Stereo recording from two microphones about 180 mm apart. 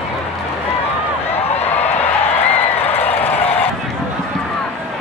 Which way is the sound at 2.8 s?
35° left (ahead or behind).